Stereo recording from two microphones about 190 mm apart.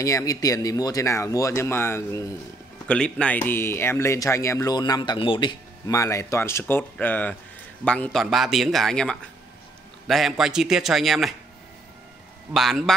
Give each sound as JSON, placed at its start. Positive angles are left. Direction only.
{"t": 0.0, "sound": "a man's voice", "side_deg": 20}
{"t": 12.5, "sound": "a man's voice", "side_deg": 0}